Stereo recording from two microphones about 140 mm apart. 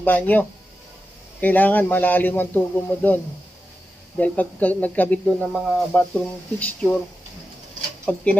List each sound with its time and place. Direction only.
0.0 s speech: 15° left (ahead or behind)
4.2 s speech: 10° left (ahead or behind)
5.2 s speech: centre (ahead or behind)
8.0 s speech: 10° left (ahead or behind)